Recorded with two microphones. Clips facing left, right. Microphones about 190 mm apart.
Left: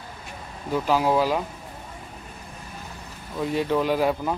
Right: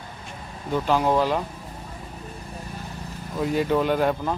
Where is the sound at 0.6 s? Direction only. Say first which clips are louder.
Even; 5° left (ahead or behind).